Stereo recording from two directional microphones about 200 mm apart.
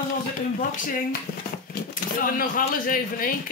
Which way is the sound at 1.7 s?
45° left (ahead or behind).